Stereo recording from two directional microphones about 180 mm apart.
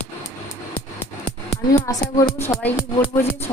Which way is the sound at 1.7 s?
20° left (ahead or behind).